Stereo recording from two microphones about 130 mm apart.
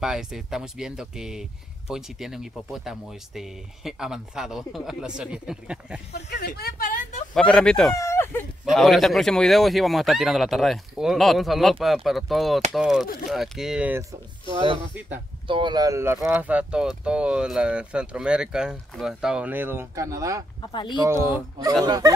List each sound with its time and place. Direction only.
0.0 s speech: 5° right (ahead or behind)
6.8 s a sound: 75° left (ahead or behind)
7.3 s speech: 5° left (ahead or behind)
7.9 s speech: 20° left (ahead or behind)
8.6 s speech: centre (ahead or behind)
14.5 s speech: 45° right (ahead or behind); by 20.4 s 25° right (ahead or behind)
20.7 s speech: 35° left (ahead or behind)
21.0 s speech: 20° right (ahead or behind)